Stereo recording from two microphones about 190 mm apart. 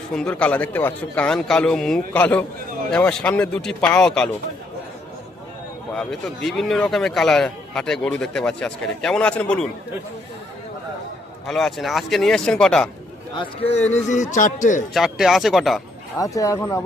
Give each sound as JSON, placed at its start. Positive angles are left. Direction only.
{"t": 0.1, "sound": "a man's voice", "side_deg": 5}
{"t": 5.9, "sound": "a man's voice", "side_deg": 0}
{"t": 11.4, "sound": "a man's voice", "side_deg": 0}
{"t": 13.3, "sound": "a man's voice", "side_deg": 30}
{"t": 14.9, "sound": "a man's voice", "side_deg": 0}
{"t": 16.1, "sound": "speech", "side_deg": 15}